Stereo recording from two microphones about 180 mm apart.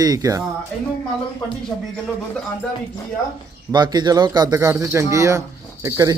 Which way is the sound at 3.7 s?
25° right (ahead or behind).